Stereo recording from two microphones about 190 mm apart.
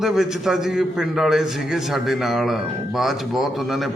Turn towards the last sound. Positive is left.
turn(degrees=0)  # may be behind; listen again after turning